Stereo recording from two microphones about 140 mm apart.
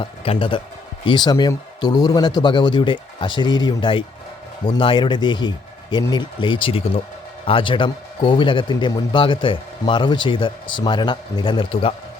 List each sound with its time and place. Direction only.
0.0 s a man's voice: 35° left (ahead or behind)